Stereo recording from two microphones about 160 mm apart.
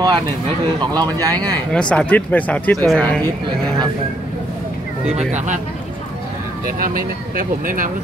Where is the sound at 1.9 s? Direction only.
10° left (ahead or behind).